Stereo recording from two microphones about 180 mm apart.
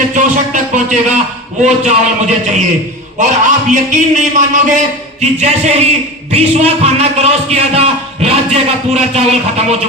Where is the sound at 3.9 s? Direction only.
45° right (ahead or behind).